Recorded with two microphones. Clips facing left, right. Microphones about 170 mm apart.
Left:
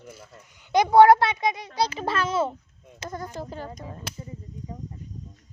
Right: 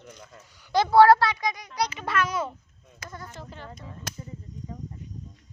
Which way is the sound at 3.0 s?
40° left (ahead or behind).